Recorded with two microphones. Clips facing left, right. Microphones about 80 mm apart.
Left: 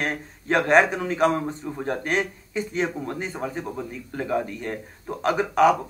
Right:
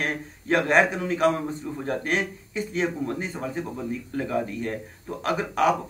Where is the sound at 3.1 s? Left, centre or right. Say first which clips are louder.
Left 1 dB; centre.